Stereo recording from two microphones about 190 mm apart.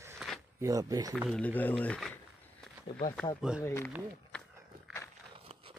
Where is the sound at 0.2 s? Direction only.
5° right (ahead or behind).